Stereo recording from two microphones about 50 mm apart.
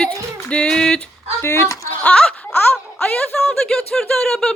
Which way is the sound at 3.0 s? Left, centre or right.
Centre.